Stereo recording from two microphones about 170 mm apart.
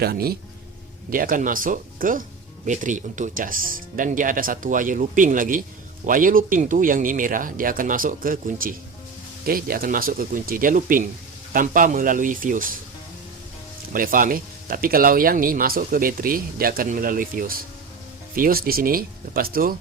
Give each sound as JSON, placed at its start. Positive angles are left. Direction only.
{"t": 0.0, "sound": "speech", "side_deg": -65}
{"t": 13.9, "sound": "speech", "side_deg": -55}